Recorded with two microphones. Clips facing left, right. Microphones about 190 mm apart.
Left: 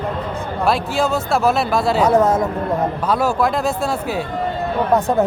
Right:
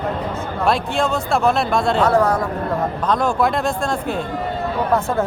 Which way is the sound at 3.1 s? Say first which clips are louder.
Even; 5° left (ahead or behind).